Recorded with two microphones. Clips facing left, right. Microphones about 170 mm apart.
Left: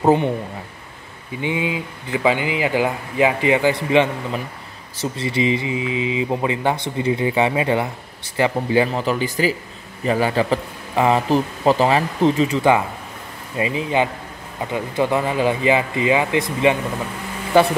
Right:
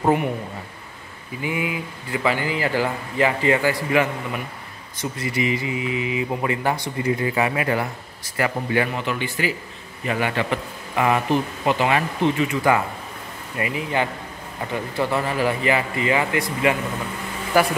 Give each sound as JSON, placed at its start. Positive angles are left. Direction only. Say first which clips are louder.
{"t": 0.0, "sound": "speech", "louder": "left 4 dB", "side_deg": 30}
{"t": 1.4, "sound": "a man's voice", "louder": "left 3 dB", "side_deg": 25}
{"t": 13.6, "sound": "speech", "louder": "left 4 dB", "side_deg": 20}